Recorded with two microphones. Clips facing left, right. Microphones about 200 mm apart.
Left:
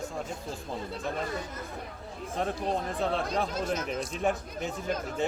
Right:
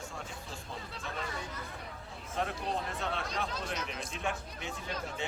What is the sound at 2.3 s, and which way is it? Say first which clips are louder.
Speech: left 5 dB; 35° left (ahead or behind).